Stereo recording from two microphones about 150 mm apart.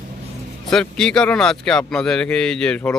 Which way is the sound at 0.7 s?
5° left (ahead or behind).